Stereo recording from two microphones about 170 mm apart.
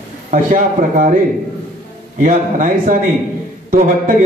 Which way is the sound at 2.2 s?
50° right (ahead or behind).